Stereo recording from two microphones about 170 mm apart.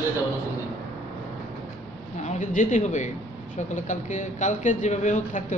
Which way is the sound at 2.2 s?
45° left (ahead or behind).